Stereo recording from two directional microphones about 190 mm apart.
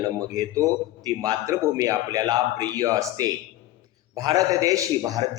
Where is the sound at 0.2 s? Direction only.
20° right (ahead or behind).